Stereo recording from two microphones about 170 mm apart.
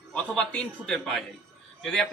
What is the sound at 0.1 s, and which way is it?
A man's voice, 5° left (ahead or behind).